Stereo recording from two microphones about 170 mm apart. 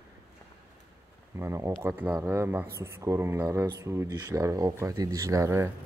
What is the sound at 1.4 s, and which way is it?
Speech, 15° right (ahead or behind).